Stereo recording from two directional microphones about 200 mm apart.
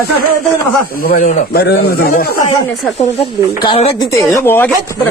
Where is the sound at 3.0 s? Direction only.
35° left (ahead or behind).